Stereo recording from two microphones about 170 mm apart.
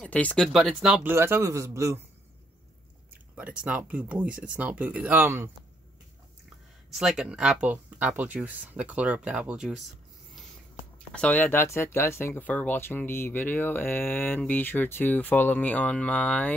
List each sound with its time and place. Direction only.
0.0 s speech: 10° left (ahead or behind)
1.1 s speech: 15° right (ahead or behind)
3.3 s speech: 10° right (ahead or behind)
6.9 s speech: centre (ahead or behind)
11.1 s speech: 10° left (ahead or behind)